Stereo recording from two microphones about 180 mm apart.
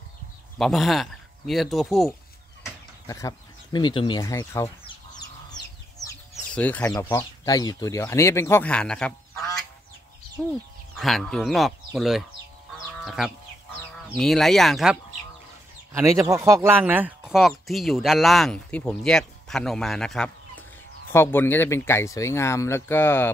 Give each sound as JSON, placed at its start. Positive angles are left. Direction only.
{"t": 0.6, "sound": "speech", "side_deg": 0}
{"t": 2.6, "sound": "a sound", "side_deg": 15}
{"t": 6.5, "sound": "speech", "side_deg": 10}
{"t": 11.0, "sound": "speech", "side_deg": 0}
{"t": 12.7, "sound": "sheep", "side_deg": -5}
{"t": 14.1, "sound": "speech", "side_deg": 0}
{"t": 15.9, "sound": "speech", "side_deg": -15}